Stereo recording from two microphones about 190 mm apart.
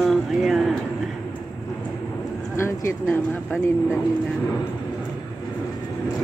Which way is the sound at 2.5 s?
15° left (ahead or behind).